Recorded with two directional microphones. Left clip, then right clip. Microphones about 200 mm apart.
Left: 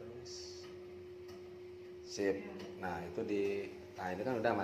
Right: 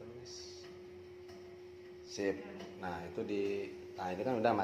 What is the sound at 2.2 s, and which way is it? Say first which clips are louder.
A man's voice: left 1 dB; 10° right (ahead or behind).